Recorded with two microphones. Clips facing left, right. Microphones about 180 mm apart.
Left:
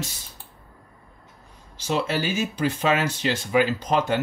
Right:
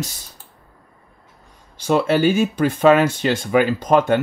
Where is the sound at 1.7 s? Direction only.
55° right (ahead or behind).